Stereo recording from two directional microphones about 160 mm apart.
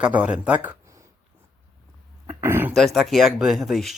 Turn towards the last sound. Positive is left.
turn(degrees=0)  # may be behind; listen again after turning